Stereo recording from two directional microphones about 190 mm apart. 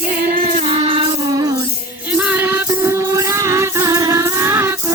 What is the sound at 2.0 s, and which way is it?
Music, 5° right (ahead or behind).